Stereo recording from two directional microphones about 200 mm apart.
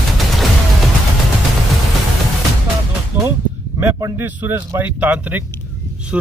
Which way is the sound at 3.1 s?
10° right (ahead or behind).